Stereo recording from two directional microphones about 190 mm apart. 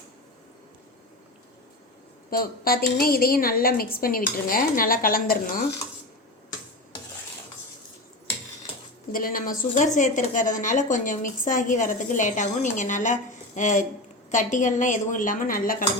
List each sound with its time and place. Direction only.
2.3 s dishes: 50° left (ahead or behind)
9.1 s a woman's voice: 50° left (ahead or behind)
14.3 s dishes: 40° left (ahead or behind)